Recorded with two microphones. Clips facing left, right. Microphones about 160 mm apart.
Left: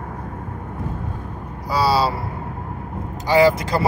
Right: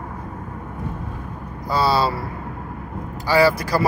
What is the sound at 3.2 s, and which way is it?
Speech, 20° left (ahead or behind).